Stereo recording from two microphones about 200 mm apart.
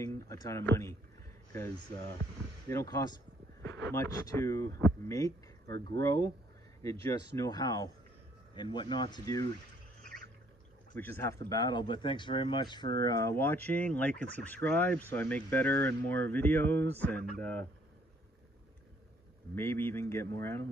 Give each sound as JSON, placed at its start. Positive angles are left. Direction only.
{"t": 0.0, "sound": "speech", "side_deg": 15}
{"t": 2.7, "sound": "speech", "side_deg": 15}
{"t": 11.0, "sound": "speech", "side_deg": 10}
{"t": 19.5, "sound": "speech", "side_deg": 10}